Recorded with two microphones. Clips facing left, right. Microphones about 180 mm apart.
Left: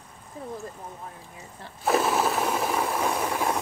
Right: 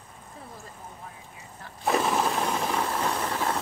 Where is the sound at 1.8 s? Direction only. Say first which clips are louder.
Left 2 dB; 5° left (ahead or behind).